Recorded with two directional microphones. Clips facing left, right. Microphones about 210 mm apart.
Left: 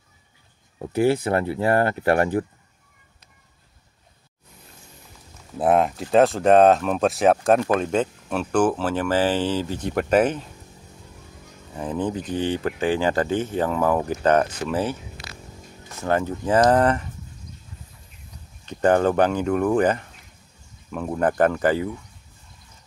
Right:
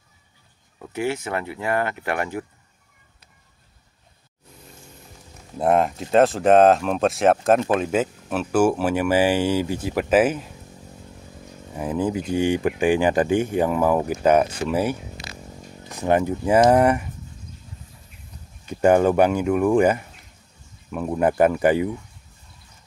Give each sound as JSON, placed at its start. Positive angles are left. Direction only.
{"t": 0.7, "sound": "speech", "side_deg": 35}
{"t": 5.6, "sound": "speech", "side_deg": 0}
{"t": 11.7, "sound": "speech", "side_deg": -10}
{"t": 18.7, "sound": "speech", "side_deg": -10}